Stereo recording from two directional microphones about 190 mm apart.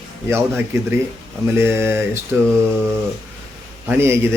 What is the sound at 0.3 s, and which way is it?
Speech, 15° right (ahead or behind).